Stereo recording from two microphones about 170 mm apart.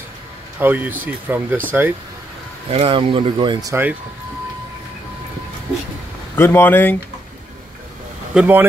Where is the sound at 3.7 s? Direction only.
10° right (ahead or behind).